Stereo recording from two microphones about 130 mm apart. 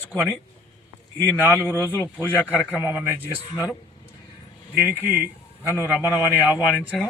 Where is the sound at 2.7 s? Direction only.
15° right (ahead or behind).